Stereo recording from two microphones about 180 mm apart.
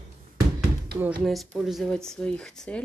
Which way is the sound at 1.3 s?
Centre (ahead or behind).